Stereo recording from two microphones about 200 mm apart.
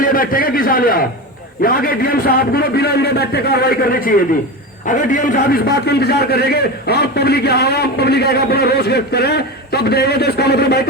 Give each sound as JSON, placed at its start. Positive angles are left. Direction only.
{"t": 0.0, "sound": "a man's voice", "side_deg": 45}